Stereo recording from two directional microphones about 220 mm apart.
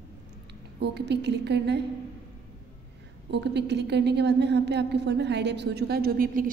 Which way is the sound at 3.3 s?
50° right (ahead or behind).